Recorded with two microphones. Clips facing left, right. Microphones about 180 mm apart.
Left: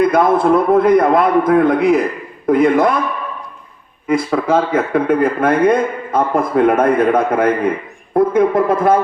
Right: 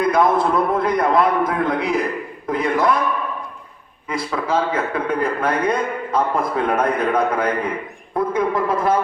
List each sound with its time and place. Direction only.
0.0 s a man's voice: 55° left (ahead or behind)
4.1 s speech: 55° left (ahead or behind)